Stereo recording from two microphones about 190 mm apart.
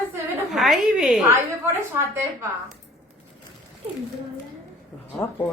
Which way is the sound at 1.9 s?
15° right (ahead or behind).